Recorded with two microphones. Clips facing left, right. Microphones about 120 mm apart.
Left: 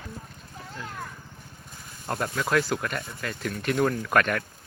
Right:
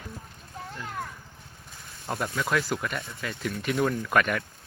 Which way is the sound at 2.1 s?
Centre (ahead or behind).